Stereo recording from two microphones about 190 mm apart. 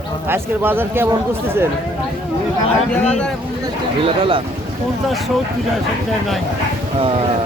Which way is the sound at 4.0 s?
30° right (ahead or behind).